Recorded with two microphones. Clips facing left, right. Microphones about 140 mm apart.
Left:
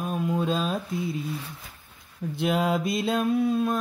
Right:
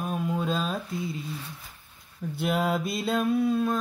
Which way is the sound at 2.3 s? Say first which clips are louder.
Left 2 dB; centre (ahead or behind).